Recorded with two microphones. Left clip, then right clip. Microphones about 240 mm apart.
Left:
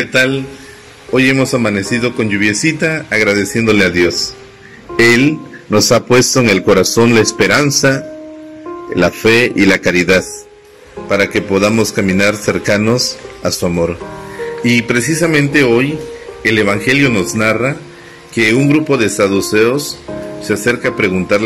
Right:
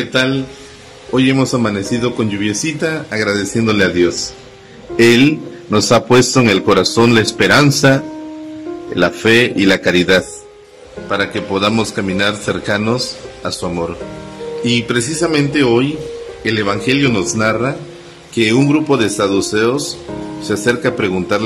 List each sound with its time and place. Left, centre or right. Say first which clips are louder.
1.1 s a man's voice: left 3 dB; centre
9.0 s a man's voice: left 1 dB; centre